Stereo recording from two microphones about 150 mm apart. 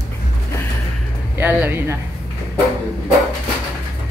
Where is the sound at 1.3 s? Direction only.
10° right (ahead or behind).